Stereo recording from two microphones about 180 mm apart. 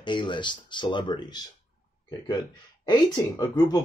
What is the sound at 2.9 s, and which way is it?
Speech, 20° left (ahead or behind).